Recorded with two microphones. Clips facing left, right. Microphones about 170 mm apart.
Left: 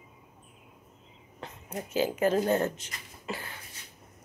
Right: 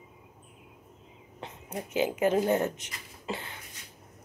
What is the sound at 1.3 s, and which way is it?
Speech, 20° right (ahead or behind).